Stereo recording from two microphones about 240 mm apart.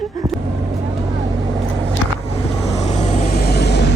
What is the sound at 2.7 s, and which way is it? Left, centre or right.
Vehicle, left.